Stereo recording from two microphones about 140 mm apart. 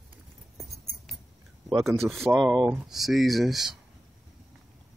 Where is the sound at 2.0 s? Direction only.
Centre (ahead or behind).